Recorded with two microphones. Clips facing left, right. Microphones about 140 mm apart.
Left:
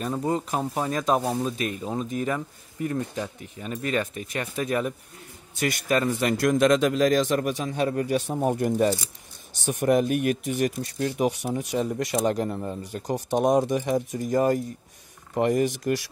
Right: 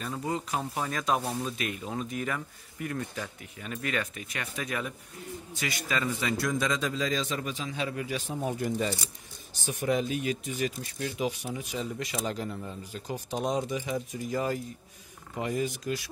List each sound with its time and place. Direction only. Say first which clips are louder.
0.0 s speech: left 6 dB; 40° left (ahead or behind); by 13.5 s 75° left (ahead or behind)
13.5 s speech: left 8 dB; 55° left (ahead or behind)